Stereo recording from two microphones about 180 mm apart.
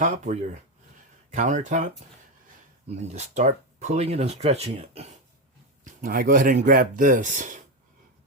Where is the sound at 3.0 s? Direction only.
40° right (ahead or behind).